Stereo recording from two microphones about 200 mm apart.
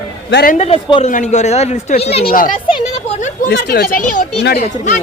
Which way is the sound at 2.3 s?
45° left (ahead or behind).